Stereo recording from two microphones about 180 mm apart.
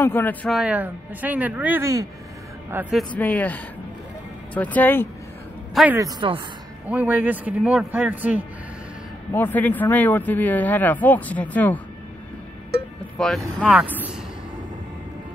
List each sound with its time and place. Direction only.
0.0 s a man's voice: 10° left (ahead or behind)
0.6 s a man's voice: 5° right (ahead or behind)
2.7 s speech: 5° right (ahead or behind)
3.2 s a man's voice: 10° left (ahead or behind)
5.9 s a woman's voice: 20° right (ahead or behind)
6.9 s a man's voice: 10° right (ahead or behind)
9.3 s a man's voice: 10° left (ahead or behind)
13.2 s speech: centre (ahead or behind)